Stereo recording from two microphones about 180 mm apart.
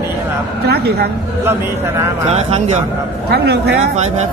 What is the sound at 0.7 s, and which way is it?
Speech, 65° right (ahead or behind).